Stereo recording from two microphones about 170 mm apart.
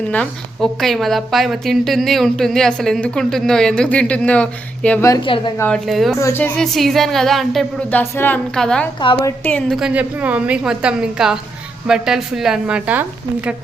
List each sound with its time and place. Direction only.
0.1 s a woman's voice: 5° left (ahead or behind)
5.0 s a woman's voice: 25° left (ahead or behind)
5.5 s a woman's voice: 5° left (ahead or behind)
6.1 s a woman's voice: 15° left (ahead or behind); by 13.6 s 10° right (ahead or behind)